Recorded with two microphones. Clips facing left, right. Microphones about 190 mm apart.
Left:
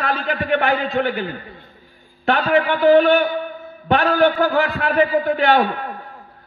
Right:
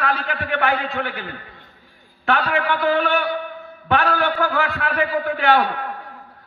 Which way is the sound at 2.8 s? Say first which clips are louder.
Left 10 dB; 35° left (ahead or behind).